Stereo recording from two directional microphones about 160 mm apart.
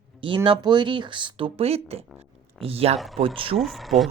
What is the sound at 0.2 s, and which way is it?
Speech, 30° right (ahead or behind).